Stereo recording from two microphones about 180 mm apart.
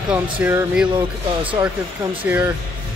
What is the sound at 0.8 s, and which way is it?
Speech, 30° right (ahead or behind).